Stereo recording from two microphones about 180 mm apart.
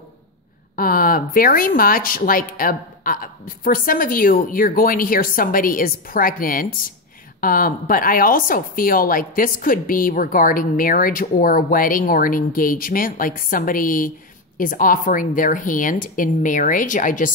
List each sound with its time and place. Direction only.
0.7 s speech: 55° left (ahead or behind)